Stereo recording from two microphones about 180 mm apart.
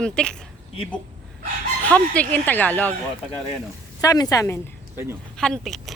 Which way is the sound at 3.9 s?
20° left (ahead or behind).